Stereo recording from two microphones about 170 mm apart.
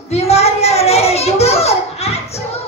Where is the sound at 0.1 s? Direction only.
40° left (ahead or behind).